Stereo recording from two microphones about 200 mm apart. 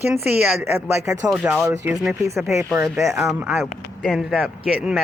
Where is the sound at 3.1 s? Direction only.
Centre (ahead or behind).